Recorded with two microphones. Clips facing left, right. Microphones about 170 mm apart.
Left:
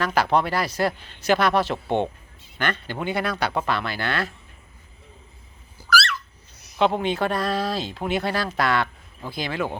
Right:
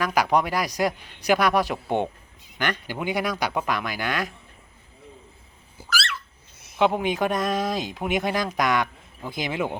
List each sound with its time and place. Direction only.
0.0 s speech: 10° right (ahead or behind)
5.7 s a sound: 25° right (ahead or behind)
6.7 s speech: 10° right (ahead or behind)